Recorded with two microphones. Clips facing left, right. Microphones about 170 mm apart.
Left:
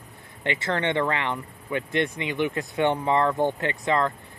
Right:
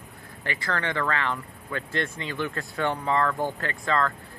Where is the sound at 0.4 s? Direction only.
25° left (ahead or behind).